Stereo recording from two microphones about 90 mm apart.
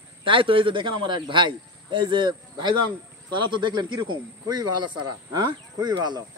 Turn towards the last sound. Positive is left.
turn(degrees=-55)  # may be behind; listen again after turning